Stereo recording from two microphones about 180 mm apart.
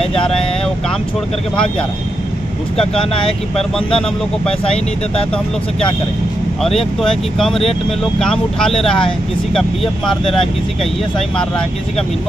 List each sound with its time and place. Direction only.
0.1 s speech: 30° left (ahead or behind)
3.5 s speech: 5° left (ahead or behind)
7.0 s speech: centre (ahead or behind)